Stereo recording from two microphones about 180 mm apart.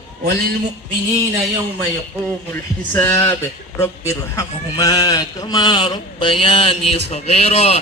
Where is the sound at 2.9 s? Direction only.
10° left (ahead or behind).